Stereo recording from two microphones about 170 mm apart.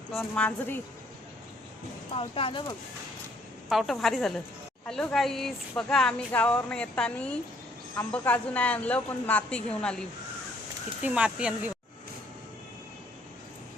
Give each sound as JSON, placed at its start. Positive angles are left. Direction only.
{"t": 0.1, "sound": "a woman's voice", "side_deg": 5}
{"t": 2.1, "sound": "speech", "side_deg": 35}
{"t": 3.7, "sound": "a woman's voice", "side_deg": 0}
{"t": 11.0, "sound": "speech", "side_deg": -5}